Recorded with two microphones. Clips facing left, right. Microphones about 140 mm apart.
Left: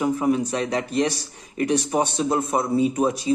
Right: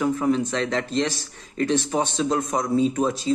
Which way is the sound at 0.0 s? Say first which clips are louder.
Even; 15° left (ahead or behind).